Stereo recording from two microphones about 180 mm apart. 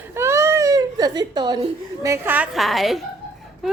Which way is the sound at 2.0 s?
15° right (ahead or behind).